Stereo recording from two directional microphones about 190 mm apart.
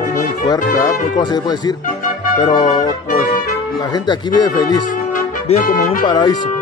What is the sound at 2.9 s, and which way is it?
Music, 45° left (ahead or behind).